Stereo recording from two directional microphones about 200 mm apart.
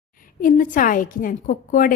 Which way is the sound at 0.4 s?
45° left (ahead or behind).